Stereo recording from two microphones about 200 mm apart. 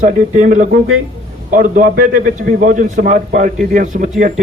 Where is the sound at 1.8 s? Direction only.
40° right (ahead or behind).